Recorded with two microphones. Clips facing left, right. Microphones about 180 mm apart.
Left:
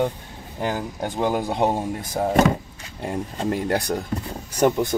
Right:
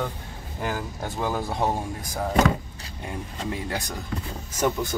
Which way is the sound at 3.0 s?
45° left (ahead or behind).